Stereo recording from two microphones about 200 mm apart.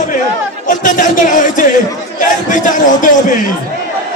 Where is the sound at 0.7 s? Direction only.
40° left (ahead or behind).